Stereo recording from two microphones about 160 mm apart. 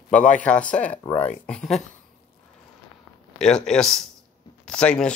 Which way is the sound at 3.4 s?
5° left (ahead or behind).